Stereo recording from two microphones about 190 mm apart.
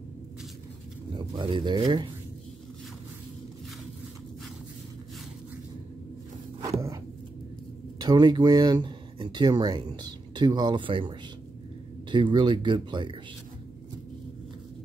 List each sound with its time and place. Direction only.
1.1 s speech: 25° right (ahead or behind)
8.0 s speech: 20° right (ahead or behind)